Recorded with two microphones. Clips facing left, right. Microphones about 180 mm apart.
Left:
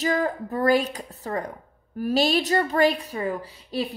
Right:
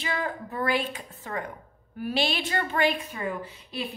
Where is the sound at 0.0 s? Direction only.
40° left (ahead or behind).